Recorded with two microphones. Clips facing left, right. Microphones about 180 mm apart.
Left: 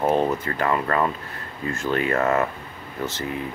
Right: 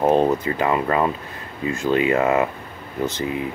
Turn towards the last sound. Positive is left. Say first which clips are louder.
# right 4 dB
turn(degrees=-15)  # may be behind; listen again after turning